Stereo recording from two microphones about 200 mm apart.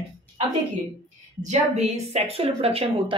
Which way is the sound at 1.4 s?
35° right (ahead or behind).